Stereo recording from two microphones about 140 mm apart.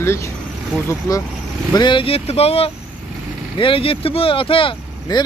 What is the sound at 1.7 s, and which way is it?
Speech, 35° left (ahead or behind).